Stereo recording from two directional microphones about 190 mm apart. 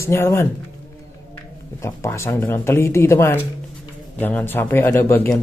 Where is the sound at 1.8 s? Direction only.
15° left (ahead or behind).